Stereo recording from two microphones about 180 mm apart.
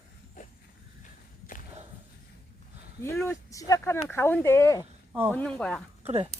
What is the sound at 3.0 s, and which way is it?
Speech, 15° left (ahead or behind).